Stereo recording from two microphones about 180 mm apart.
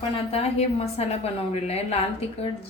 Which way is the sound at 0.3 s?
35° left (ahead or behind).